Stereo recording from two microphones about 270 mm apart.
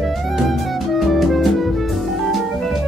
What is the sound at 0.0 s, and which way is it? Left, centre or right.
Music, centre.